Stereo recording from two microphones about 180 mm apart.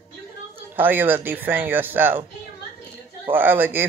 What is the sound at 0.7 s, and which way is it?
Speech, 10° right (ahead or behind).